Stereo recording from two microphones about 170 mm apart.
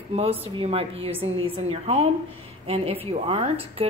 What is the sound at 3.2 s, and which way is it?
Speech, 35° right (ahead or behind).